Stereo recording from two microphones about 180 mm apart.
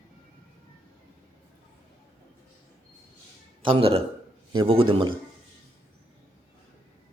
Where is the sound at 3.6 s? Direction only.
30° right (ahead or behind).